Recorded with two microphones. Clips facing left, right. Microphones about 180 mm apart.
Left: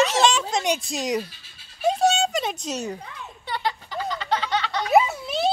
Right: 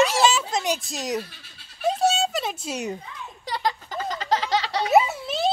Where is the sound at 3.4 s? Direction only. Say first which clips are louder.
Right 1 dB; 40° right (ahead or behind).